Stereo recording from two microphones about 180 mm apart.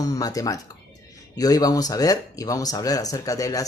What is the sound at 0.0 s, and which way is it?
Speech, 20° left (ahead or behind).